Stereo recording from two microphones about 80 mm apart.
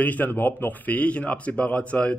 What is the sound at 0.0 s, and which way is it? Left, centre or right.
Speech, left.